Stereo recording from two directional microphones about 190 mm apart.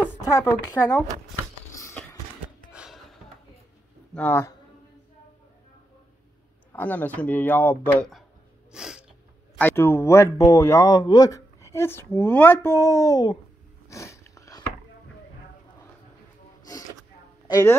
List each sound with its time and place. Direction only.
0.1 s a woman's voice: 20° left (ahead or behind)
2.7 s a sound: centre (ahead or behind)
4.1 s speech: 10° left (ahead or behind)
6.7 s a man's voice: 10° left (ahead or behind)
8.7 s sneeze: 5° right (ahead or behind)
9.6 s a man's voice: 10° left (ahead or behind)
13.8 s a sound: 15° left (ahead or behind)
17.5 s speech: 20° left (ahead or behind)